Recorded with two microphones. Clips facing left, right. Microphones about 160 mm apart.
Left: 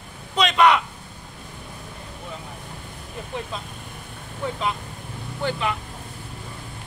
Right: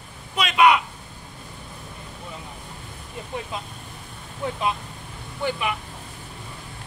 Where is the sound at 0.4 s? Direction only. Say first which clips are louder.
Even; 10° right (ahead or behind).